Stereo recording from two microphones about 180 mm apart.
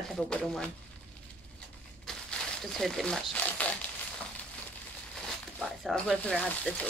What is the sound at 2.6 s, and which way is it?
Speech, centre (ahead or behind).